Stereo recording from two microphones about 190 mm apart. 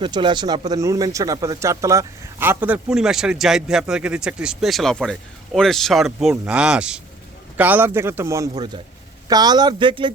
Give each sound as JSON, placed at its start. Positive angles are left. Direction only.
{"t": 0.0, "sound": "a man's voice", "side_deg": -25}